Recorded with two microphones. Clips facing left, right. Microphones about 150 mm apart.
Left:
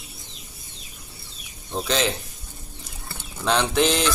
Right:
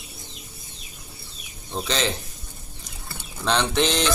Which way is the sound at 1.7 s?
5° left (ahead or behind).